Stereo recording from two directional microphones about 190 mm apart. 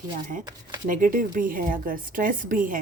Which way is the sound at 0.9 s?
45° right (ahead or behind).